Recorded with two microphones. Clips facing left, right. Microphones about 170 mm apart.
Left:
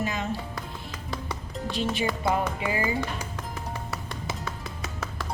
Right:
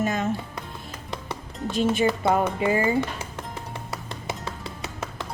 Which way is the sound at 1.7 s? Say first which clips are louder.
Right 6 dB; 45° right (ahead or behind).